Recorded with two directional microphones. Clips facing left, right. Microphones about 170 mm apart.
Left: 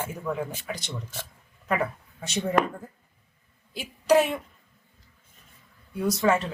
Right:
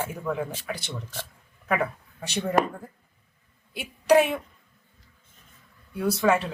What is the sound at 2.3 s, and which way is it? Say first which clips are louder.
Speech: even; 10° right (ahead or behind).